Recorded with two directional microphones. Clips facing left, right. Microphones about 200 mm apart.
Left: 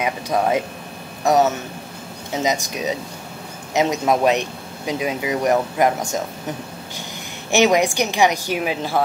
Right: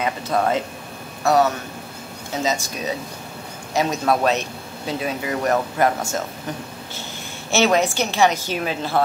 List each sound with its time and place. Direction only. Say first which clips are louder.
0.0 s speech: left 1 dB; 10° left (ahead or behind)
7.5 s speech: left 2 dB; 15° left (ahead or behind)